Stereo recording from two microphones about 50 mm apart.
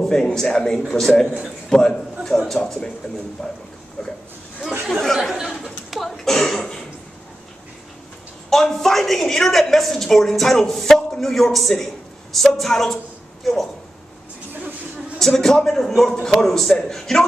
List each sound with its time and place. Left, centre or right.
0.0 s a man's voice: centre
3.4 s a woman's voice: centre
5.0 s a woman's voice: centre
5.5 s a sound: centre
8.5 s a woman's voice: centre
15.1 s a man's voice: centre